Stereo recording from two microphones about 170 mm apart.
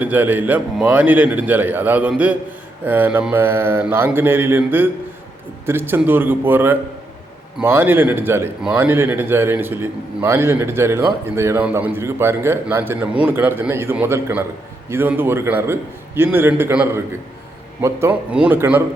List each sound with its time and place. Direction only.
0.0 s speech: 10° right (ahead or behind)